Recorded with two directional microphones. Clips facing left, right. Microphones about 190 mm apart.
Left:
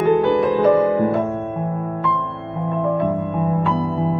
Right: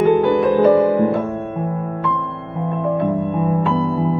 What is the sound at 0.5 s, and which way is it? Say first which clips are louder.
Music: right 5 dB; 35° right (ahead or behind).